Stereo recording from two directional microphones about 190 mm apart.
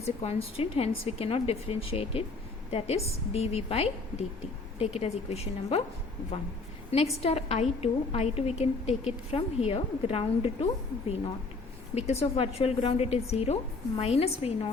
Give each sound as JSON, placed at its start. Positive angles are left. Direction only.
{"t": 0.0, "sound": "a woman's voice", "side_deg": 35}
{"t": 6.9, "sound": "a woman's voice", "side_deg": 30}
{"t": 11.9, "sound": "a woman's voice", "side_deg": 35}